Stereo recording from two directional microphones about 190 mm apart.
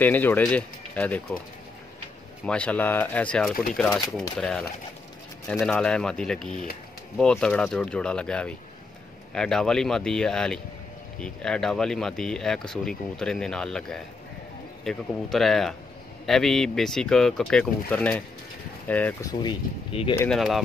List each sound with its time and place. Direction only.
0.0 s speech: 10° left (ahead or behind)
2.4 s speech: 5° left (ahead or behind)
19.4 s speech: 25° left (ahead or behind)
20.2 s speech: centre (ahead or behind)